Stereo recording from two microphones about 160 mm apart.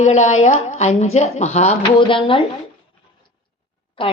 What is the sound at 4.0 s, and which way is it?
Speech, 35° left (ahead or behind).